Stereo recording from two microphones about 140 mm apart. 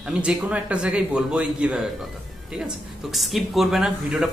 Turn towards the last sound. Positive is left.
turn(degrees=0)  # may be behind; listen again after turning